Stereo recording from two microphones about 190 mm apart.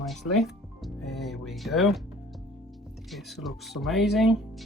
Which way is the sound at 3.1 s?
Centre (ahead or behind).